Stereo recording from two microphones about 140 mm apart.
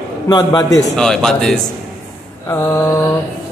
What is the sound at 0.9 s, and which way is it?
Speech, 5° left (ahead or behind).